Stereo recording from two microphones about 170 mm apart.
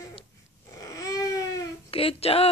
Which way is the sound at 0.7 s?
20° left (ahead or behind).